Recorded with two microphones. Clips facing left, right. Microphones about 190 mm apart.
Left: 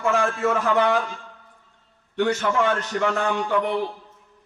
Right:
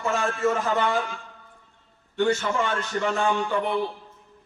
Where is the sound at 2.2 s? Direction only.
65° left (ahead or behind).